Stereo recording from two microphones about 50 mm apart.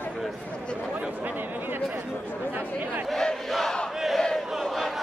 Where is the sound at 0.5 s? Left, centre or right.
Left.